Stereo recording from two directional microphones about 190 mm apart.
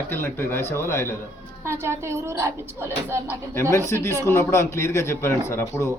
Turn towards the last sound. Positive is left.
turn(degrees=15)  # may be behind; listen again after turning